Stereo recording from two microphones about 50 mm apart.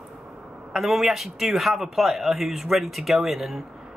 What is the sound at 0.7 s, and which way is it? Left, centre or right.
Speech, centre.